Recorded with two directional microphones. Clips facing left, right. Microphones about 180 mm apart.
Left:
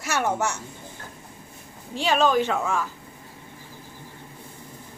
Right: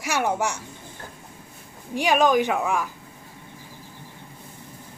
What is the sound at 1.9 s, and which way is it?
Speech, 15° right (ahead or behind).